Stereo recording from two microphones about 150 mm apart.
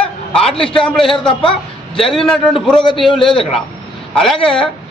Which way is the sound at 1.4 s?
35° left (ahead or behind).